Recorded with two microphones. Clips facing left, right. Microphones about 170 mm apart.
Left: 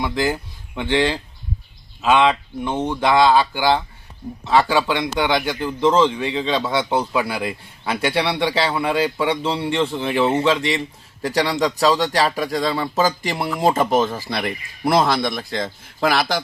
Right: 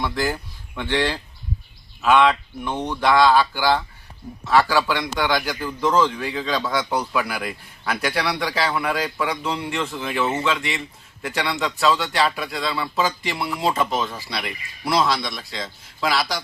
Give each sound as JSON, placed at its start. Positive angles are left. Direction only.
{"t": 0.0, "sound": "a man's voice", "side_deg": 20}